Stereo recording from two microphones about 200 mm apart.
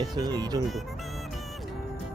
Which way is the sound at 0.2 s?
20° right (ahead or behind).